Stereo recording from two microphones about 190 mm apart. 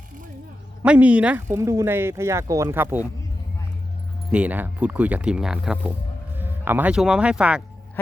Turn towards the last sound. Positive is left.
turn(degrees=-5)  # may be behind; listen again after turning